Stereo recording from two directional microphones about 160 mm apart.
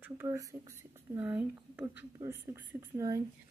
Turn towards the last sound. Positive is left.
turn(degrees=-15)  # may be behind; listen again after turning